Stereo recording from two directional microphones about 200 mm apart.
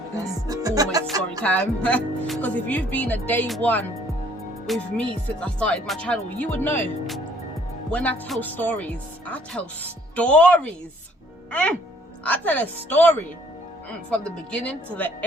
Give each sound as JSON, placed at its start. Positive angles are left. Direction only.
{"t": 0.4, "sound": "music", "side_deg": -15}
{"t": 1.4, "sound": "speech", "side_deg": 5}